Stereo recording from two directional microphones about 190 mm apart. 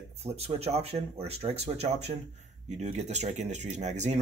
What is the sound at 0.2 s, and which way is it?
Speech, 35° right (ahead or behind).